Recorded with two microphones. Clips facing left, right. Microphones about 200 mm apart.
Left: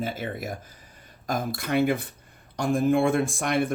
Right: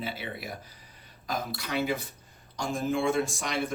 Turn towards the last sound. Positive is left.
turn(degrees=55)  # may be behind; listen again after turning